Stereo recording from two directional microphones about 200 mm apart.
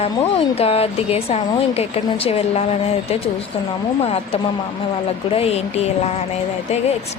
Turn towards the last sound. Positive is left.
turn(degrees=30)  # may be behind; listen again after turning